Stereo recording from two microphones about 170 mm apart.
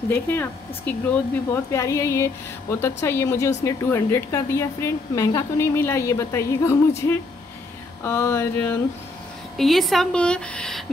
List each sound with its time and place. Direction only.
0.1 s speech: 10° left (ahead or behind)
8.0 s speech: 15° left (ahead or behind)
9.6 s speech: centre (ahead or behind)